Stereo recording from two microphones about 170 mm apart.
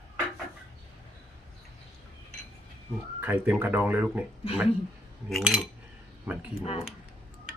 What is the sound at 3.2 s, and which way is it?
Speech, 10° right (ahead or behind).